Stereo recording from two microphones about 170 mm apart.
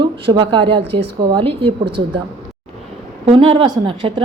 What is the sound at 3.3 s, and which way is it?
Speech, 30° right (ahead or behind).